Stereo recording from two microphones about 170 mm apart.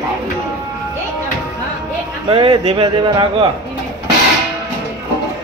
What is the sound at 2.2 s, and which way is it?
Speech, 30° right (ahead or behind).